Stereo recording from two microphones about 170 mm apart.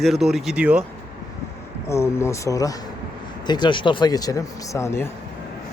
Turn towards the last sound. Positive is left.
turn(degrees=15)  # may be behind; listen again after turning